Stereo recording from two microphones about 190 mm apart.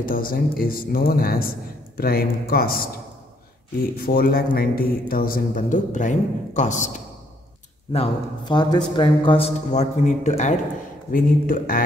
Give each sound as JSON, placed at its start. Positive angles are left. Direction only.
{"t": 0.0, "sound": "a man's voice", "side_deg": 45}
{"t": 4.0, "sound": "a man's voice", "side_deg": 50}
{"t": 7.9, "sound": "a man's voice", "side_deg": 25}